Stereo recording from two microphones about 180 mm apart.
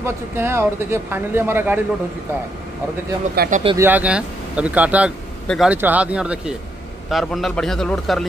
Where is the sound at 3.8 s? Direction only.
10° right (ahead or behind).